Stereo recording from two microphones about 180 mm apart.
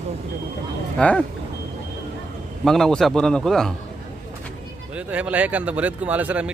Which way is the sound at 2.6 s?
Centre (ahead or behind).